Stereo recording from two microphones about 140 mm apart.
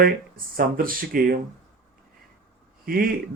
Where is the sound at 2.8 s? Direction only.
90° right.